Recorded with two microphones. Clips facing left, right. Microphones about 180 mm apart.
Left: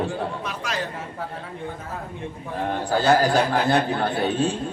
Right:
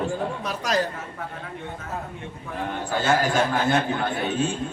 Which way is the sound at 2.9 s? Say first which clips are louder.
Left 4 dB; 35° left (ahead or behind).